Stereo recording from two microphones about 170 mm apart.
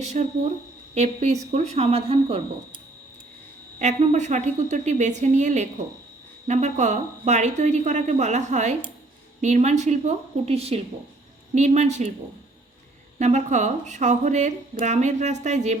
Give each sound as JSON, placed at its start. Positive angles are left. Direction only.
{"t": 0.0, "sound": "speech", "side_deg": -45}
{"t": 3.8, "sound": "speech", "side_deg": -45}
{"t": 13.1, "sound": "speech", "side_deg": -45}